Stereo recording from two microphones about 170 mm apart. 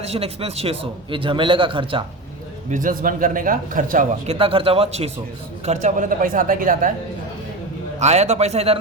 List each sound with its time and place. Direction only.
0.0 s a man's voice: 35° right (ahead or behind)
2.6 s a man's voice: 50° right (ahead or behind)
7.9 s a man's voice: 40° right (ahead or behind)